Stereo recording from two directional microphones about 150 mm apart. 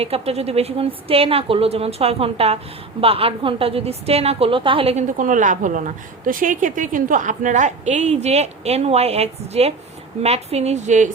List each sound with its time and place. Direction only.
0.0 s a woman's voice: 40° right (ahead or behind)